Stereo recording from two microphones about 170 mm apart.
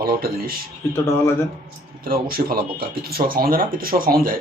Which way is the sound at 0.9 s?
15° left (ahead or behind).